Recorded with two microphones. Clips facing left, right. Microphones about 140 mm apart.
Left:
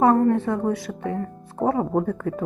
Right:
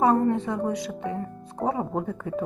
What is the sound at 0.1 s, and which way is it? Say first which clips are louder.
A woman's voice: left 4 dB; 20° right (ahead or behind).